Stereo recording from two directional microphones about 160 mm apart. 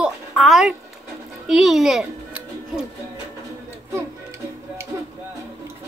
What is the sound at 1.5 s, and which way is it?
A child's voice, centre (ahead or behind).